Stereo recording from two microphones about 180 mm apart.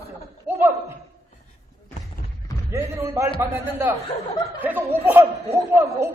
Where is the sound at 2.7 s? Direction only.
15° right (ahead or behind).